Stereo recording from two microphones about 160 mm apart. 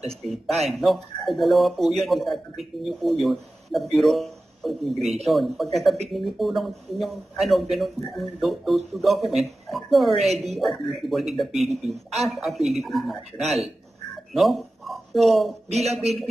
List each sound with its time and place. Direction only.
0.5 s speech: centre (ahead or behind)
15.7 s speech: 40° right (ahead or behind)